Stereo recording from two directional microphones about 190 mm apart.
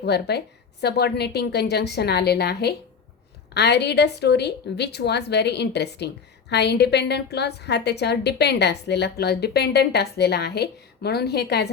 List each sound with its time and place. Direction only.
0.0 s a woman's voice: 60° left (ahead or behind)